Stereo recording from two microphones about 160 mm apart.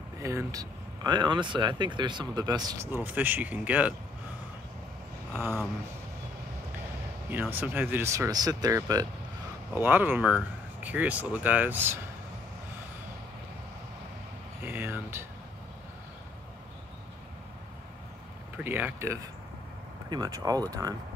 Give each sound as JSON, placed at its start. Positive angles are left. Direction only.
{"t": 0.2, "sound": "speech", "side_deg": -20}
{"t": 5.3, "sound": "speech", "side_deg": -15}
{"t": 7.2, "sound": "speech", "side_deg": -10}
{"t": 9.8, "sound": "speech", "side_deg": -10}
{"t": 14.6, "sound": "speech", "side_deg": -15}
{"t": 18.6, "sound": "speech", "side_deg": -10}